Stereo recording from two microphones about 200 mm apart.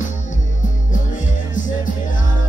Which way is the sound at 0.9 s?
40° left (ahead or behind).